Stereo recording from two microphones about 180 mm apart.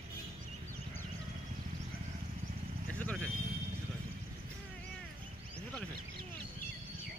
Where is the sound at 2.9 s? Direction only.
5° left (ahead or behind).